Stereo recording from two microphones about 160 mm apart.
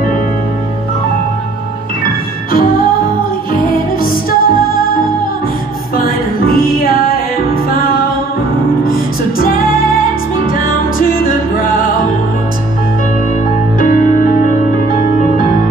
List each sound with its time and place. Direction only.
4.0 s music: 65° left (ahead or behind)
8.8 s music: 65° left (ahead or behind)
13.7 s music: 60° left (ahead or behind)